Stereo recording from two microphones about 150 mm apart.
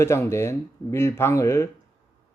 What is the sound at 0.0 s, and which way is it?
Speech, 20° left (ahead or behind).